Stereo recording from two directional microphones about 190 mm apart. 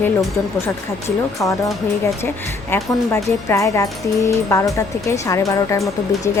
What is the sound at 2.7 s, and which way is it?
Speech, 15° left (ahead or behind).